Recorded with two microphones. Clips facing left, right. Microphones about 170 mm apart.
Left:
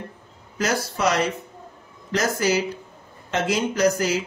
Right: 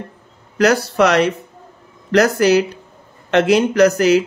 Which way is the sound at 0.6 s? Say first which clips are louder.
Right 10 dB; 70° right (ahead or behind).